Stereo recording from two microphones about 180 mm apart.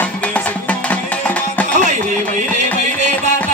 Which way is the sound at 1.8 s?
40° right (ahead or behind).